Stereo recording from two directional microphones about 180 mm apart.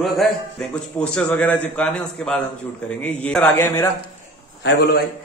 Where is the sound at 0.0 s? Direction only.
5° left (ahead or behind).